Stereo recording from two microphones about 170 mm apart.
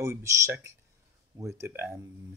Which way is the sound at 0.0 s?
15° right (ahead or behind).